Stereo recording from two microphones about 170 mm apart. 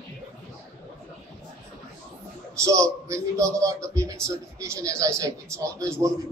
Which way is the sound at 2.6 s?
20° right (ahead or behind).